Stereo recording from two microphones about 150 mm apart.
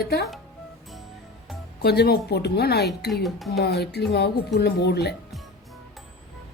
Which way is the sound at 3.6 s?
90° left.